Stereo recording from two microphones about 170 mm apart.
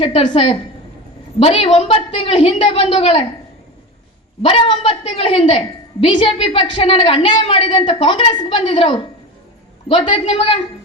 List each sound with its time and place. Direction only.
0.0 s a woman's voice: 35° left (ahead or behind)
4.4 s a woman's voice: 30° left (ahead or behind)